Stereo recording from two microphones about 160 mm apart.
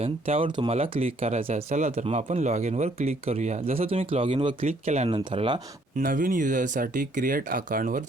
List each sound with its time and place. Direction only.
0.0 s speech: 35° right (ahead or behind)
6.0 s speech: 55° right (ahead or behind)